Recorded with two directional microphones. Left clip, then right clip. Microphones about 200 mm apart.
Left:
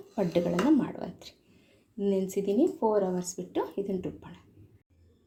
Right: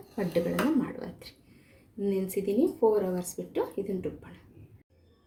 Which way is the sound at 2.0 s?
25° left (ahead or behind).